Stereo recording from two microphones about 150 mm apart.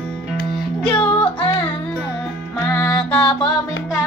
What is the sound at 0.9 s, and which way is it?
Music, 10° left (ahead or behind).